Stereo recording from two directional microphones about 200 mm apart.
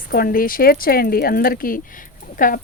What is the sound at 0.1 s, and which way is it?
Speech, 45° left (ahead or behind).